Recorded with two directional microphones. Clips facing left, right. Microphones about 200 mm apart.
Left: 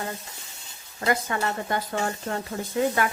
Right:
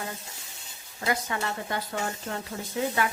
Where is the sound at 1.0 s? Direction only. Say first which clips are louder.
Left 4 dB; 50° left (ahead or behind).